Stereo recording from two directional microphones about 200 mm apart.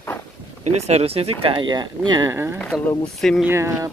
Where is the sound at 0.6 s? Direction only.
30° right (ahead or behind); by 2.5 s 15° right (ahead or behind).